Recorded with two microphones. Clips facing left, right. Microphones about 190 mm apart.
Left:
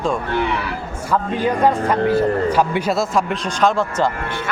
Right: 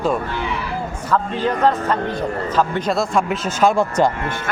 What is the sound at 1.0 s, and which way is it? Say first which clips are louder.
A man's voice: left 1 dB; 10° left (ahead or behind).